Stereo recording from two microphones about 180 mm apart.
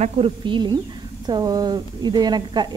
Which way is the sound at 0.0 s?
30° right (ahead or behind).